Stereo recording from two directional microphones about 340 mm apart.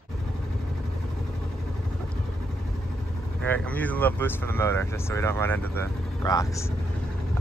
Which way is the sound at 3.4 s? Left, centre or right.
Centre.